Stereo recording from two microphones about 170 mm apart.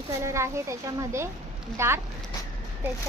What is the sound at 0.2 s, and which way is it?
Speech, 15° right (ahead or behind).